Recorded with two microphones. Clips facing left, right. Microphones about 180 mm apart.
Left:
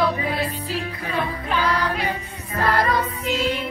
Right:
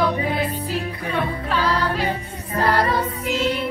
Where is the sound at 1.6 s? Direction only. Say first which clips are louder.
Right 2 dB; 30° right (ahead or behind).